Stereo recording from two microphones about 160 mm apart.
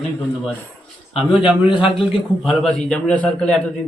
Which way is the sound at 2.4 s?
Centre (ahead or behind).